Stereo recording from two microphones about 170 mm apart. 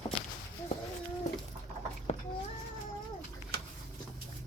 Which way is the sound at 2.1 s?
40° left (ahead or behind).